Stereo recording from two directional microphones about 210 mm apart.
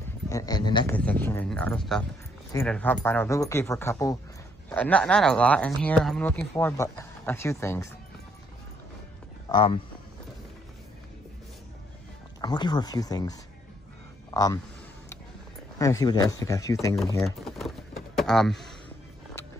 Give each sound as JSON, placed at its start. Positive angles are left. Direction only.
{"t": 0.3, "sound": "a man's voice", "side_deg": 15}
{"t": 0.9, "sound": "speech", "side_deg": 5}
{"t": 9.5, "sound": "speech", "side_deg": 25}
{"t": 12.4, "sound": "a man's voice", "side_deg": 20}
{"t": 15.8, "sound": "speech", "side_deg": 15}
{"t": 17.2, "sound": "a sound", "side_deg": 0}